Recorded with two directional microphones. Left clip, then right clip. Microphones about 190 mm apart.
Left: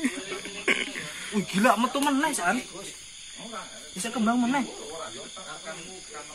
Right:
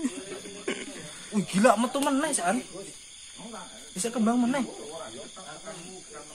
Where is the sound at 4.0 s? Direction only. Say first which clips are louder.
Even; 35° right (ahead or behind).